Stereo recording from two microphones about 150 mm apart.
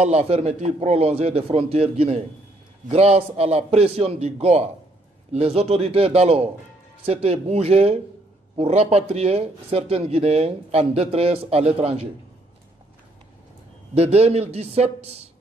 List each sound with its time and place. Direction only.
0.0 s a man's voice: 45° right (ahead or behind)
13.9 s speech: 45° right (ahead or behind)